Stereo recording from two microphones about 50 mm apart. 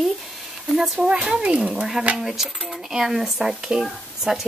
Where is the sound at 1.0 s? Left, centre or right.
Centre.